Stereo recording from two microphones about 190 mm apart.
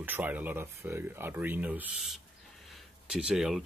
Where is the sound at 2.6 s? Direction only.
Centre (ahead or behind).